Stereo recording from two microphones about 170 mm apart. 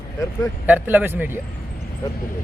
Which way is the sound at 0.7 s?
10° right (ahead or behind).